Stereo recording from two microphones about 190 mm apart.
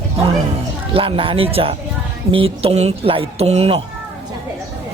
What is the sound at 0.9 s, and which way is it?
Speech, 30° right (ahead or behind).